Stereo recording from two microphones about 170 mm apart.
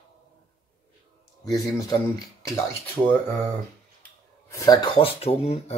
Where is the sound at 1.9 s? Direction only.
20° left (ahead or behind).